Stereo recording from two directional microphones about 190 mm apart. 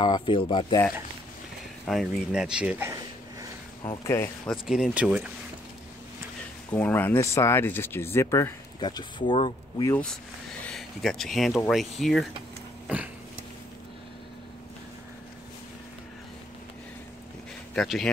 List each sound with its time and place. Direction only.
0.0 s speech: 25° left (ahead or behind)
1.9 s speech: centre (ahead or behind)
4.0 s speech: 15° left (ahead or behind)
4.6 s speech: centre (ahead or behind)
6.7 s speech: 10° left (ahead or behind)
10.6 s speech: centre (ahead or behind)
12.8 s dog: 5° right (ahead or behind)
17.7 s speech: centre (ahead or behind)